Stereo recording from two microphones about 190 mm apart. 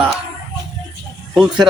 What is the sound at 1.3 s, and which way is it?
Speech, 5° right (ahead or behind).